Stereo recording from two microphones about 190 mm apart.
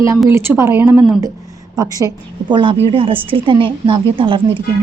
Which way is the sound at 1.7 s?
20° right (ahead or behind).